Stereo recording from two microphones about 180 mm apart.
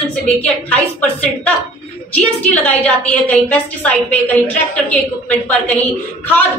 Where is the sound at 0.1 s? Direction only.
5° left (ahead or behind).